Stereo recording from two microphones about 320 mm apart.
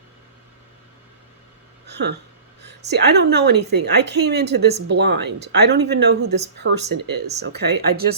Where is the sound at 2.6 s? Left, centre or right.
Right.